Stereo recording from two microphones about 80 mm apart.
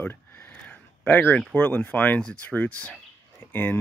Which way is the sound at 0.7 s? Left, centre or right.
Centre.